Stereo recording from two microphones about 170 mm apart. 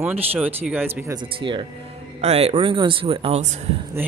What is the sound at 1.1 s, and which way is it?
Speech, 30° right (ahead or behind).